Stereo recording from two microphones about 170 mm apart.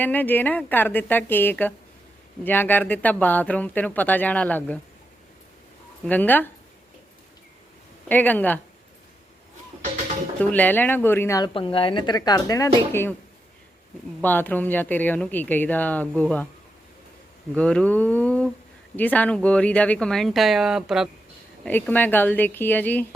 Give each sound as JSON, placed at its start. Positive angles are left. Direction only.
{"t": 0.0, "sound": "speech", "side_deg": 10}
{"t": 6.1, "sound": "speech", "side_deg": 10}
{"t": 8.0, "sound": "speech", "side_deg": 10}
{"t": 10.5, "sound": "speech", "side_deg": 10}
{"t": 14.2, "sound": "speech", "side_deg": 10}
{"t": 17.5, "sound": "speech", "side_deg": 5}
{"t": 21.6, "sound": "speech", "side_deg": 10}